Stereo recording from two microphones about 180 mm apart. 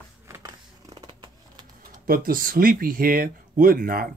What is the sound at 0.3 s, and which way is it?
Scissors, 20° right (ahead or behind).